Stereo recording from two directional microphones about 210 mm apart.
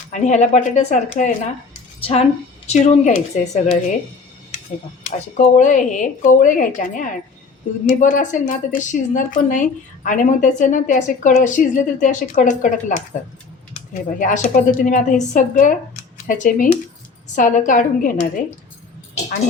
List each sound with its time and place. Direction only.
0.1 s speech: 35° left (ahead or behind)
5.4 s speech: 35° left (ahead or behind)